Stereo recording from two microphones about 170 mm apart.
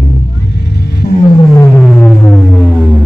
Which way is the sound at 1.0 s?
40° left (ahead or behind).